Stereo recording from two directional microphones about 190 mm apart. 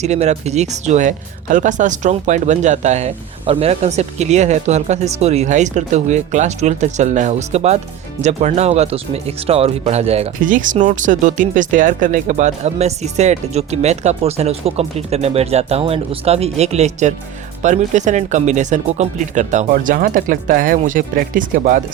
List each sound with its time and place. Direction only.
0.0 s speech: 35° right (ahead or behind)